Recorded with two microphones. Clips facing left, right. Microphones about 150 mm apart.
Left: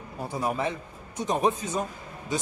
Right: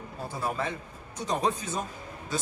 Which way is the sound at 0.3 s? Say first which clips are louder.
Left 4 dB; 20° left (ahead or behind).